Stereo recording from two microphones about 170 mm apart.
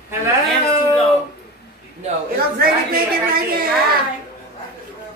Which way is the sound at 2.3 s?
60° right (ahead or behind).